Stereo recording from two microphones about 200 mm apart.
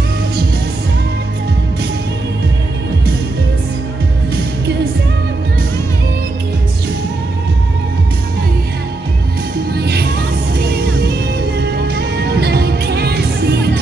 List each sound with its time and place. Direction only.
9.8 s music: 55° right (ahead or behind)